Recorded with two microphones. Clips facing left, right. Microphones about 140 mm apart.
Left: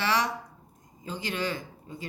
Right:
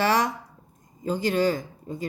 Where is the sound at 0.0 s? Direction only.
45° right (ahead or behind).